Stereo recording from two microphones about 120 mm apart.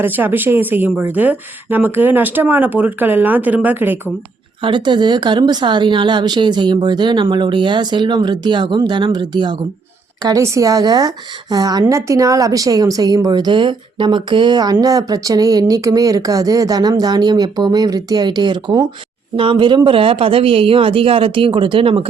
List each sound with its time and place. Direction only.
0.0 s speech: 15° right (ahead or behind)
4.6 s a woman's voice: 40° right (ahead or behind)
10.2 s a woman's voice: 25° right (ahead or behind); by 22.0 s 45° right (ahead or behind)